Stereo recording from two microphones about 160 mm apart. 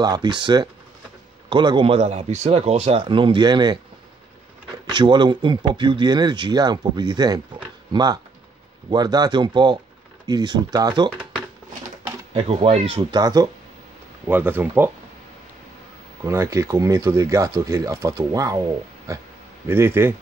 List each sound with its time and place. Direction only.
0.0 s speech: 25° right (ahead or behind)
4.8 s speech: 30° right (ahead or behind)
12.4 s speech: 35° right (ahead or behind)
13.2 s speech: 25° right (ahead or behind)
14.2 s speech: 10° right (ahead or behind)
16.3 s speech: 20° right (ahead or behind)
19.7 s speech: 15° right (ahead or behind)